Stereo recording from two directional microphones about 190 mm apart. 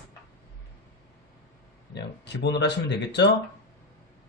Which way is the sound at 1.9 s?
65° left (ahead or behind).